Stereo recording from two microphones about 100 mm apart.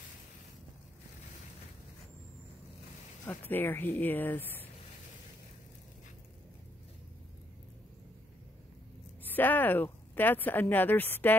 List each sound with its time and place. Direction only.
3.3 s speech: 20° left (ahead or behind)
9.2 s speech: 20° left (ahead or behind)